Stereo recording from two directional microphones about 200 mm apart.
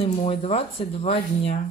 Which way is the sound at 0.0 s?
30° left (ahead or behind).